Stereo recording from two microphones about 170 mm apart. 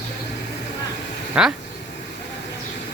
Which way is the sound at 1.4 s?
5° right (ahead or behind).